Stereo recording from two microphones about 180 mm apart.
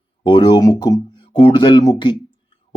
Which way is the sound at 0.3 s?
25° left (ahead or behind).